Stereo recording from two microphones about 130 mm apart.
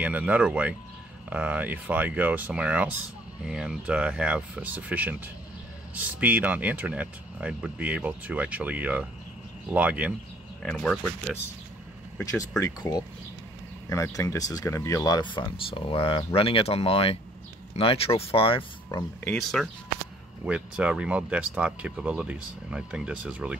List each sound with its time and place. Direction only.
0.0 s speech: 10° right (ahead or behind)
10.6 s speech: 5° left (ahead or behind)
12.2 s speech: 25° left (ahead or behind)
15.0 s speech: 35° left (ahead or behind)
18.9 s speech: 30° left (ahead or behind)
19.4 s speech: centre (ahead or behind)